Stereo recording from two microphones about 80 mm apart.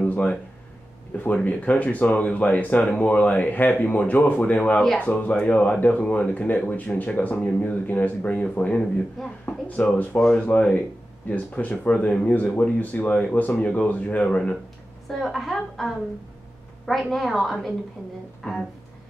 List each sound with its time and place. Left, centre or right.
0.0 s a sound: centre
1.1 s speech: centre
15.0 s a woman's voice: centre
17.1 s a woman's voice: centre
18.4 s speech: centre